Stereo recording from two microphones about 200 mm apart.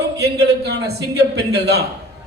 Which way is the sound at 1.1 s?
55° right (ahead or behind).